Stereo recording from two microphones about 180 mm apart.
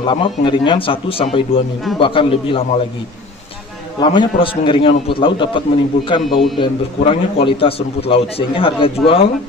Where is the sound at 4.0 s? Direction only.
25° left (ahead or behind).